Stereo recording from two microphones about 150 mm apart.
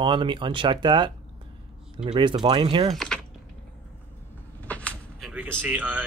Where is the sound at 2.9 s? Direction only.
5° left (ahead or behind).